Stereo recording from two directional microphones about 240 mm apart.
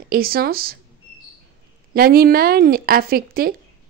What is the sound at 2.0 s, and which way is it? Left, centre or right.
Speech, right.